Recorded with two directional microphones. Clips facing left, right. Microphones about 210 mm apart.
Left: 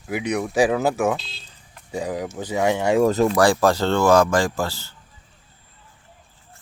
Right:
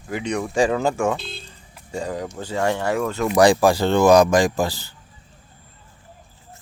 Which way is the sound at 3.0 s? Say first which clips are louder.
Left 6 dB; 35° left (ahead or behind).